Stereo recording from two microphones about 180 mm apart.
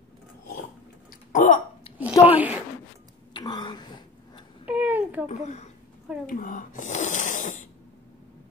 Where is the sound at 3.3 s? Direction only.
25° left (ahead or behind).